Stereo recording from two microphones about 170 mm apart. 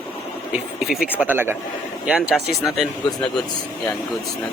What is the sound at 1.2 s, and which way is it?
Speech, 10° right (ahead or behind).